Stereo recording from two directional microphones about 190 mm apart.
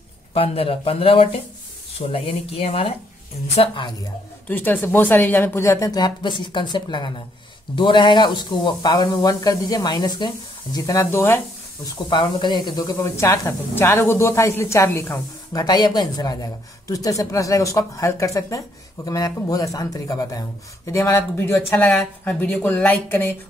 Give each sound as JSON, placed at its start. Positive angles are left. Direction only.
{"t": 0.3, "sound": "speech", "side_deg": 30}
{"t": 4.5, "sound": "speech", "side_deg": 10}
{"t": 12.1, "sound": "speech", "side_deg": 25}